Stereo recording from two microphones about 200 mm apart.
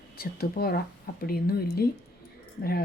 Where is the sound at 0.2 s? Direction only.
50° left (ahead or behind).